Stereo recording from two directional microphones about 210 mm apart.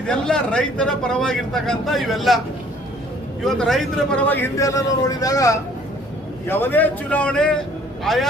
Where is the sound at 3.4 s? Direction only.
Centre (ahead or behind).